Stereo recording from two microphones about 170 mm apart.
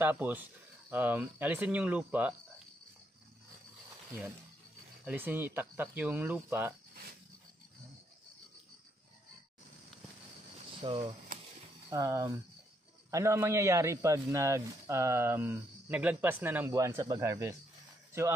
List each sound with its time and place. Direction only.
0.0 s a man's voice: 10° right (ahead or behind)
5.0 s a man's voice: 10° right (ahead or behind)
10.8 s speech: 30° right (ahead or behind)
11.9 s a man's voice: 20° right (ahead or behind)